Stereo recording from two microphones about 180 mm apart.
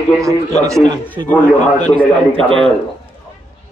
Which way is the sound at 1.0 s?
10° left (ahead or behind).